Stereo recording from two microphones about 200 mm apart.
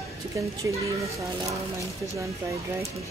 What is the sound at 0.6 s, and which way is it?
Speech, 15° right (ahead or behind).